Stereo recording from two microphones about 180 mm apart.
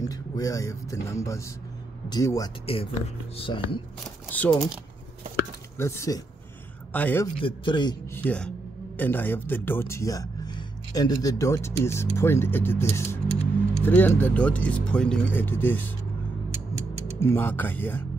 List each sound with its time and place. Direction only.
0.0 s speech: 20° left (ahead or behind)
2.6 s speech: 30° left (ahead or behind)
4.3 s speech: 5° left (ahead or behind)
5.8 s speech: 15° left (ahead or behind)
7.3 s speech: 30° left (ahead or behind)
8.1 s speech: 10° left (ahead or behind)
17.2 s speech: 10° left (ahead or behind)